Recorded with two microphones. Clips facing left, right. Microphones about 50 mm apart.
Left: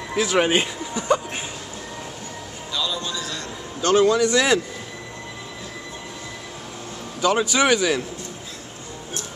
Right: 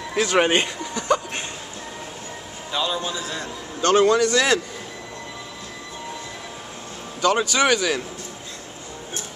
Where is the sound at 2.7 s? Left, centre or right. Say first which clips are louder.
Right 2 dB; right.